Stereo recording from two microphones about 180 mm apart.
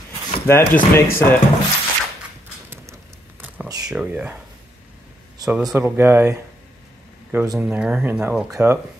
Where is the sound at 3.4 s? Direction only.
10° right (ahead or behind).